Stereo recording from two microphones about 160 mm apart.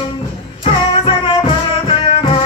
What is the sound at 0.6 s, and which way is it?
Child singing, 35° left (ahead or behind).